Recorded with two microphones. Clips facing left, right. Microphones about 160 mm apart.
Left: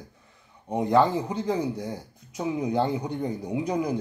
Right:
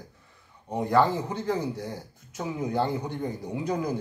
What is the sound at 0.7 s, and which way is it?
Speech, 20° left (ahead or behind).